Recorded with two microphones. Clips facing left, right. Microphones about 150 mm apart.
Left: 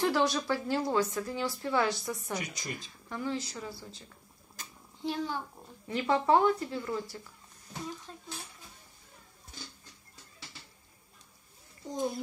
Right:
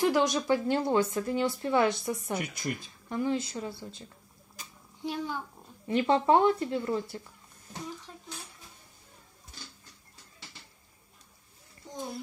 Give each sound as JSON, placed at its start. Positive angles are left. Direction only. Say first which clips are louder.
{"t": 0.0, "sound": "speech", "louder": "right 2 dB", "side_deg": -15}
{"t": 2.3, "sound": "speech", "louder": "right 4 dB", "side_deg": -55}
{"t": 3.1, "sound": "speech", "louder": "right 5 dB", "side_deg": -20}
{"t": 4.6, "sound": "a sound", "louder": "even", "side_deg": -15}
{"t": 5.9, "sound": "speech", "louder": "right 3 dB", "side_deg": -25}
{"t": 8.1, "sound": "speech", "louder": "even", "side_deg": -10}